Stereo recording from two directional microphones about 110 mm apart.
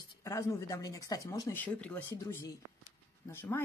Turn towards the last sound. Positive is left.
turn(degrees=20)  # may be behind; listen again after turning